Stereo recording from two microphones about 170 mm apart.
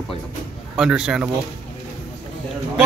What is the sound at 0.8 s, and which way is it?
Speech, 5° right (ahead or behind).